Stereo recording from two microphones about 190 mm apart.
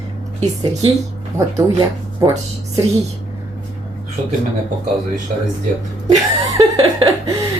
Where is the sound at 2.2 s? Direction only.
20° right (ahead or behind).